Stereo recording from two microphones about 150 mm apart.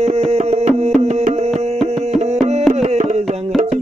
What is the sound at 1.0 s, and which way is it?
Music, 45° right (ahead or behind).